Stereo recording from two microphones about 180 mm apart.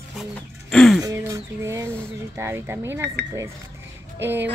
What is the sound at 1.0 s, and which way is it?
Speech, 20° right (ahead or behind).